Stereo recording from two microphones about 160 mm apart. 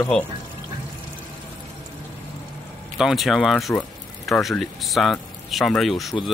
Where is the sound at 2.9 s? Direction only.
Centre (ahead or behind).